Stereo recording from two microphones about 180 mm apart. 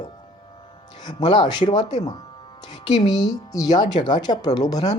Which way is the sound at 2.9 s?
20° left (ahead or behind).